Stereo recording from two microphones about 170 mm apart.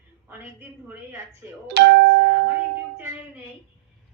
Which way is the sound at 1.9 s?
80° right.